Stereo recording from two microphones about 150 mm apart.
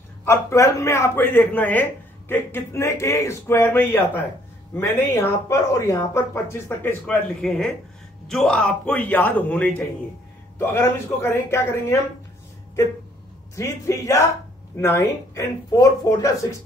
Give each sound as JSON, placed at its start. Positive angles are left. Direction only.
{"t": 0.2, "sound": "a man's voice", "side_deg": 20}
{"t": 5.5, "sound": "a man's voice", "side_deg": 20}
{"t": 13.6, "sound": "speech", "side_deg": 20}